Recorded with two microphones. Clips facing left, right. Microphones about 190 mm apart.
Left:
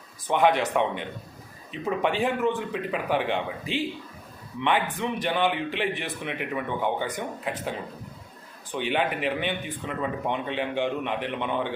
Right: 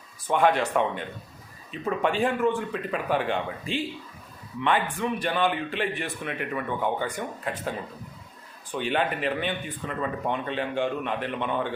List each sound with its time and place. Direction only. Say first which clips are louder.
0.3 s speech: even; 15° left (ahead or behind)
8.7 s speech: even; 15° left (ahead or behind)